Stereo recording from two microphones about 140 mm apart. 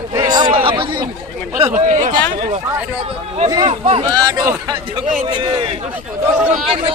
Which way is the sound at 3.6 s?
45° right (ahead or behind).